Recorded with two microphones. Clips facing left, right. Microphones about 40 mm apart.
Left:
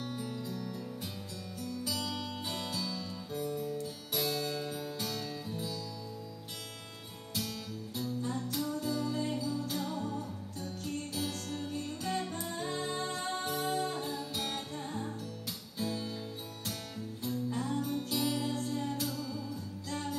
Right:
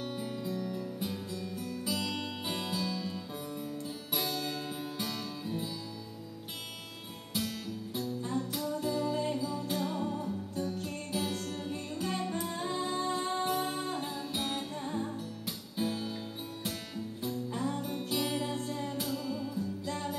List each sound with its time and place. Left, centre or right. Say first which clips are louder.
0.1 s music: right 3 dB; centre
7.3 s music: right 3 dB; centre
17.2 s music: even; centre